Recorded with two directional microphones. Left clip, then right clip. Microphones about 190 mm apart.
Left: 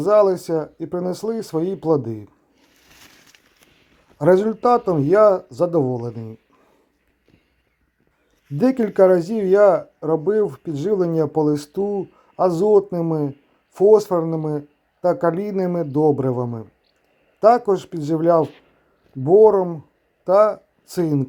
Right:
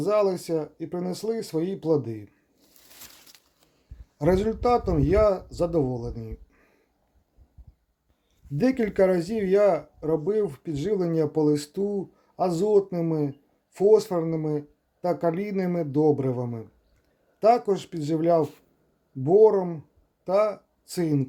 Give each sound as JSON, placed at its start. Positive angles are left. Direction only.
{"t": 0.0, "sound": "speech", "side_deg": 20}
{"t": 3.3, "sound": "a sound", "side_deg": -55}
{"t": 4.2, "sound": "speech", "side_deg": 20}
{"t": 8.5, "sound": "speech", "side_deg": 20}